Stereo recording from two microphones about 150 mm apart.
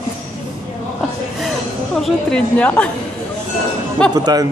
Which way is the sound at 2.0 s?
5° left (ahead or behind).